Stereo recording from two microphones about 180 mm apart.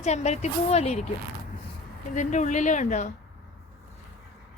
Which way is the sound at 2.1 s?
45° left (ahead or behind).